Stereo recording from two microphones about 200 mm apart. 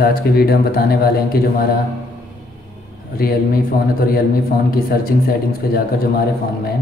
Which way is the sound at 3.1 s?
50° left (ahead or behind).